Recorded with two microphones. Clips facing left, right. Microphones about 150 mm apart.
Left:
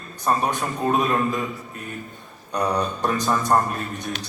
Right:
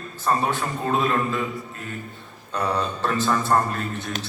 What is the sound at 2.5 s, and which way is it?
A man's voice, 15° left (ahead or behind).